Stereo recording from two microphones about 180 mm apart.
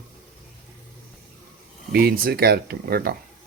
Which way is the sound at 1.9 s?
60° right (ahead or behind).